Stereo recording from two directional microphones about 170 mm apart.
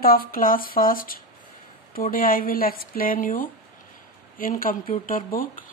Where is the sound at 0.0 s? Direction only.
60° left (ahead or behind).